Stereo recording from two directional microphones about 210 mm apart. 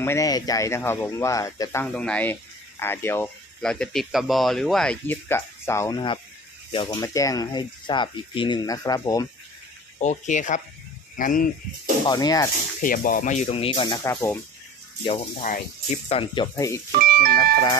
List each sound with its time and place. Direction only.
0.0 s speech: 15° left (ahead or behind)
9.9 s speech: 35° left (ahead or behind)
12.1 s speech: 20° left (ahead or behind)
12.8 s speech: 40° left (ahead or behind); by 14.4 s 15° left (ahead or behind)
15.4 s speech: 35° left (ahead or behind); by 16.8 s 15° left (ahead or behind)
17.0 s speech: 45° right (ahead or behind)